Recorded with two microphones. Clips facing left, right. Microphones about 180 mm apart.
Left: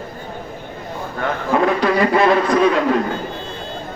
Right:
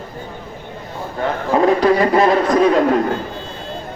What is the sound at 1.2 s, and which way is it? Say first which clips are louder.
A man's voice: right 2 dB; 35° right (ahead or behind).